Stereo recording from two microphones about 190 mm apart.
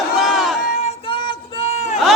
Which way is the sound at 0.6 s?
40° left (ahead or behind).